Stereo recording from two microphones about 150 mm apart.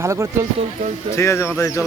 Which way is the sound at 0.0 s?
20° right (ahead or behind).